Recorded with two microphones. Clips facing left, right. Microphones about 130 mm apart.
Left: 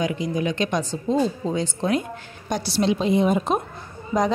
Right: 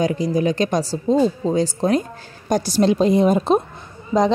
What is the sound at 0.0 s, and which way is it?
A woman's voice, 40° right (ahead or behind).